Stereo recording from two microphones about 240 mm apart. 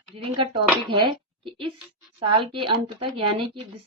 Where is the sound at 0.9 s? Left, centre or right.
Right.